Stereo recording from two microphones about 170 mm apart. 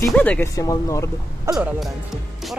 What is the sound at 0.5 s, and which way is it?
Speech, 20° left (ahead or behind).